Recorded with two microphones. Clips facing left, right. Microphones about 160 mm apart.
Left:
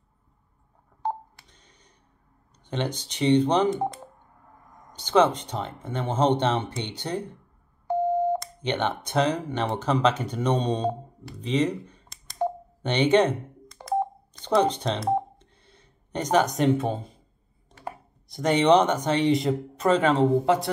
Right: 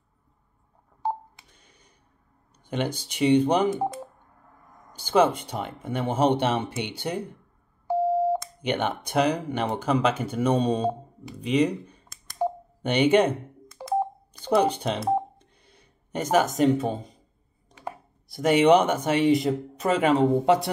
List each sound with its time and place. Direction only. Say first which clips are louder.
1.0 s telephone dialing: right 1 dB; 10° right (ahead or behind)
2.6 s speech: right 1 dB; 10° right (ahead or behind)
13.7 s telephone dialing: even; 5° right (ahead or behind)
18.3 s speech: right 1 dB; 5° right (ahead or behind)